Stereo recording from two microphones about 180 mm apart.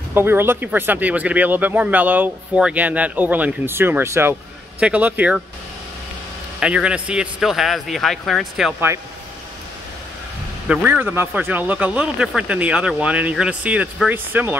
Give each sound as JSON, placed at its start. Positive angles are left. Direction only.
{"t": 0.1, "sound": "speech", "side_deg": -10}
{"t": 6.6, "sound": "speech", "side_deg": -5}
{"t": 10.7, "sound": "speech", "side_deg": -5}